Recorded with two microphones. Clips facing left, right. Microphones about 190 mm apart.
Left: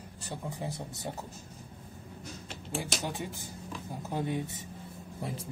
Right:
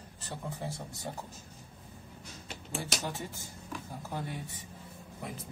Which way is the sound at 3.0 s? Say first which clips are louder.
Left 2 dB; 15° left (ahead or behind).